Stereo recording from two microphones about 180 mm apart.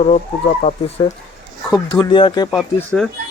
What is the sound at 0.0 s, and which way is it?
Speech, 35° left (ahead or behind).